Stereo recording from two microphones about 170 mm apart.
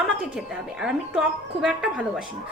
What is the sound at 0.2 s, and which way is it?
A woman's voice, 5° right (ahead or behind).